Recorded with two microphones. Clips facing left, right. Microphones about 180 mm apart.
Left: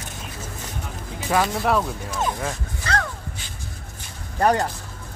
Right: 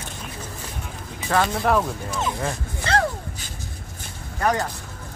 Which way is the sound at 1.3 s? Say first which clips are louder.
Even; 5° left (ahead or behind).